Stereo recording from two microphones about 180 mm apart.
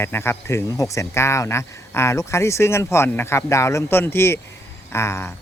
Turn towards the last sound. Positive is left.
turn(degrees=15)  # may be behind; listen again after turning